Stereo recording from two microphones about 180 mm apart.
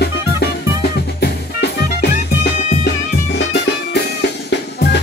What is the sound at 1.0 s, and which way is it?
Music, 65° left (ahead or behind).